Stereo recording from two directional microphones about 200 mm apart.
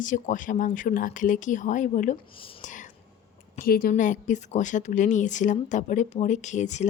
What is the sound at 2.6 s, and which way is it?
Whispering, 40° left (ahead or behind).